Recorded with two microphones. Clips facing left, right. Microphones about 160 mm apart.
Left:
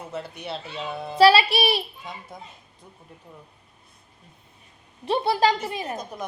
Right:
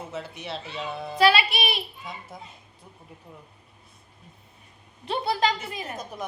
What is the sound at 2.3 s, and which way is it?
Speech, centre (ahead or behind).